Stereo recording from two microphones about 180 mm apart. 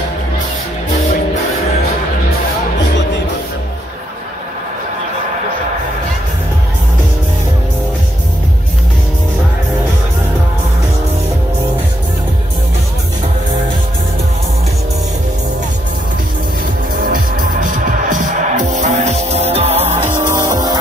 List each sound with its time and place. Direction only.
17.0 s music: 50° right (ahead or behind); by 20.0 s 35° right (ahead or behind)
20.0 s music: 15° right (ahead or behind)